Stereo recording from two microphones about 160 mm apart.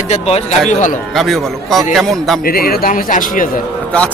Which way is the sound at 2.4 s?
70° left (ahead or behind).